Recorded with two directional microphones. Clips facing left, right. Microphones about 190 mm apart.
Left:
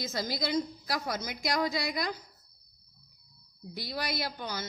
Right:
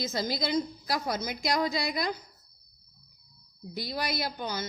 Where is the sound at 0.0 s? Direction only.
25° right (ahead or behind).